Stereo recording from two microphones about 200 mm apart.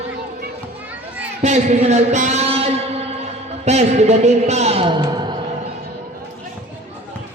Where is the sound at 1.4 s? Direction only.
35° right (ahead or behind).